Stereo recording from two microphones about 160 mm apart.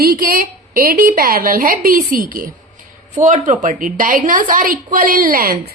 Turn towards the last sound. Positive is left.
turn(degrees=-65)  # may be behind; listen again after turning